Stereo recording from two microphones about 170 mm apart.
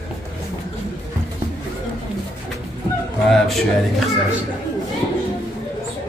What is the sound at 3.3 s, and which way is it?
Speech, centre (ahead or behind).